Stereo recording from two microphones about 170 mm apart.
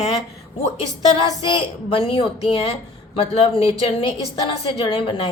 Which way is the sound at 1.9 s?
30° left (ahead or behind).